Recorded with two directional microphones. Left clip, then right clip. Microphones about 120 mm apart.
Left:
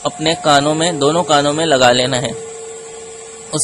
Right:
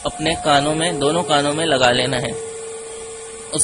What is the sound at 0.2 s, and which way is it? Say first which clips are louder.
A man's voice: left 4 dB; 35° left (ahead or behind).